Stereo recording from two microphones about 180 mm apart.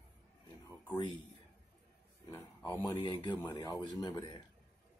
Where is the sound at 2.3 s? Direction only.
15° left (ahead or behind).